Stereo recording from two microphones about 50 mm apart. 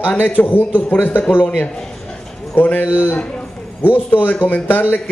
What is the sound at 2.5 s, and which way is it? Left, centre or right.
A man's voice, left.